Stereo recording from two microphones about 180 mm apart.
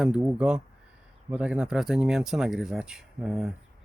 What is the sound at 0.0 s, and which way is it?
Speech, 5° right (ahead or behind).